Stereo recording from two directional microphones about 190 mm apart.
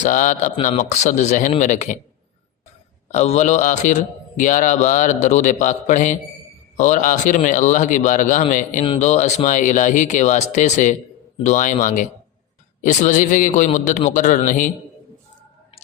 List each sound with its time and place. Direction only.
0.0 s a man's voice: 40° left (ahead or behind)
3.1 s a man's voice: 35° left (ahead or behind)